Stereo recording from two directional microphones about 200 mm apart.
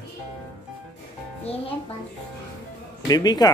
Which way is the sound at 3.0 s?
20° left (ahead or behind).